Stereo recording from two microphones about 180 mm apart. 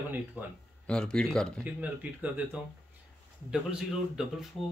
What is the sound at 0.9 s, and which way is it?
Speech, 5° left (ahead or behind).